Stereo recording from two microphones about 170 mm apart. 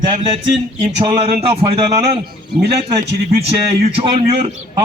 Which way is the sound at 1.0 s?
35° right (ahead or behind).